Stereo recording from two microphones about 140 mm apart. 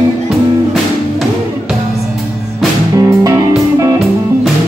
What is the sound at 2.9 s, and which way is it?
Music, 25° right (ahead or behind).